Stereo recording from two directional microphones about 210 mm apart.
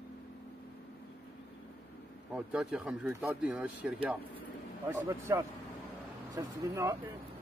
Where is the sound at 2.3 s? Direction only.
5° right (ahead or behind).